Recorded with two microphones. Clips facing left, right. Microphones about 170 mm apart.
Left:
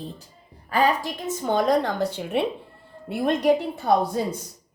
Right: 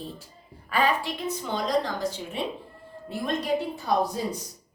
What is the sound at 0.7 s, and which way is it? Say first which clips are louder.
A woman's voice: left 3 dB; 40° left (ahead or behind).